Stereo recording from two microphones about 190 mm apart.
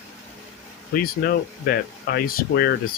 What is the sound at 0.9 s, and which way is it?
Speech, 50° left (ahead or behind).